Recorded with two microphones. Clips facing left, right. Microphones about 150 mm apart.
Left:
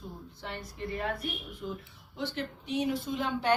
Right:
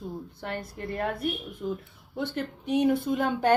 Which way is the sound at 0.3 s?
55° right (ahead or behind).